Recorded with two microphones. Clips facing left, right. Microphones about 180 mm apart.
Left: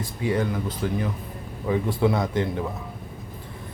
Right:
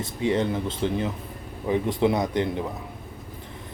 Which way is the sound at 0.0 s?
25° right (ahead or behind).